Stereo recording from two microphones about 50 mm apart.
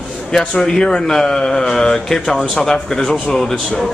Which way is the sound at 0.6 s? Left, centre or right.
Centre.